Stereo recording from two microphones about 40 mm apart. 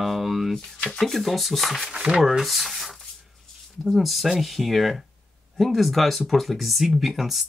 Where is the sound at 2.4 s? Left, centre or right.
Centre.